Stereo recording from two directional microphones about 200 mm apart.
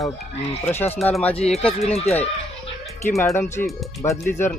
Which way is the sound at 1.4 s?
30° left (ahead or behind).